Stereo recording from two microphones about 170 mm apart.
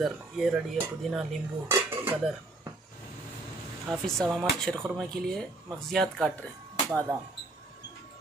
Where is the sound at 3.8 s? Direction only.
Centre (ahead or behind).